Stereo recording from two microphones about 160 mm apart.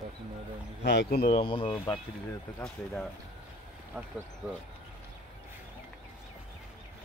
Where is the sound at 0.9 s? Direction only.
80° left.